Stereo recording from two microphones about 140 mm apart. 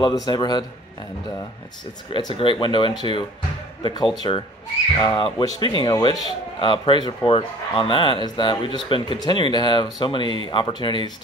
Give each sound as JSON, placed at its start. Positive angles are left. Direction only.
{"t": 0.0, "sound": "a man's voice", "side_deg": 30}
{"t": 2.1, "sound": "a man's voice", "side_deg": 35}